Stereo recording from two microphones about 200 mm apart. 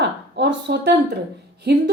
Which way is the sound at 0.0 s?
55° right (ahead or behind).